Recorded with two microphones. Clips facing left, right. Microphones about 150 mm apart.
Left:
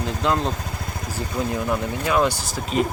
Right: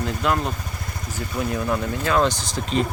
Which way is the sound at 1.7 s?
10° left (ahead or behind).